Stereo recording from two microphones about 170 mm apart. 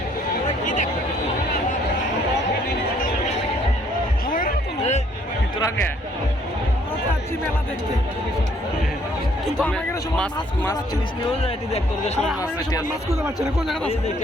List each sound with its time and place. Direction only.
4.3 s a sound: 55° left (ahead or behind)
9.6 s speech: 5° left (ahead or behind)
11.4 s speech: 40° left (ahead or behind)